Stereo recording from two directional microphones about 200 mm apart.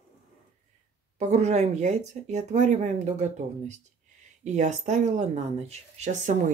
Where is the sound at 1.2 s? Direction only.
35° right (ahead or behind).